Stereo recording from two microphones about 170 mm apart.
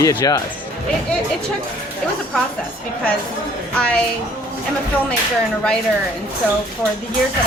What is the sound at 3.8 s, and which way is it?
Speech, 5° left (ahead or behind).